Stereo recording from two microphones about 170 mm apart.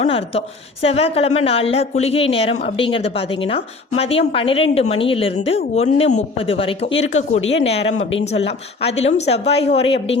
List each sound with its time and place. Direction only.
0.0 s a woman's voice: 35° left (ahead or behind)